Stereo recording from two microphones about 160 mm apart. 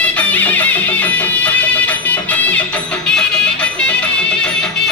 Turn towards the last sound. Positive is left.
turn(degrees=5)  # may be behind; listen again after turning